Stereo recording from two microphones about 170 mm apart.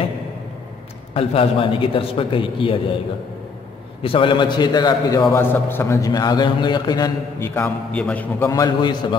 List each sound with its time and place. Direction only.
1.1 s a man's voice: 35° left (ahead or behind)
4.0 s a man's voice: 30° left (ahead or behind)
5.3 s a man's voice: 15° left (ahead or behind)